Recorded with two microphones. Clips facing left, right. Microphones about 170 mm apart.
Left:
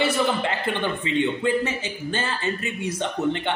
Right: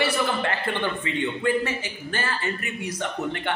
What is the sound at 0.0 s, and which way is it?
A man's voice, 20° left (ahead or behind).